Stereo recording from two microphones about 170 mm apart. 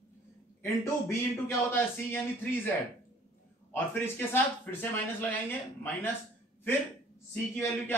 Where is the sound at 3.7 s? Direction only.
15° left (ahead or behind).